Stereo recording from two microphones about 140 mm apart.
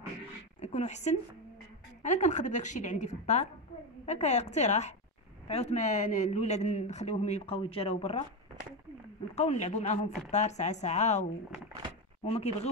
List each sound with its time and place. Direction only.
0.6 s a woman's voice: 55° left (ahead or behind)
9.3 s a woman's voice: 55° left (ahead or behind)
12.3 s speech: 50° left (ahead or behind)